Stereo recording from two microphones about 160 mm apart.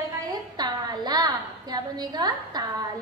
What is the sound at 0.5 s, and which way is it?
A woman's voice, 25° right (ahead or behind).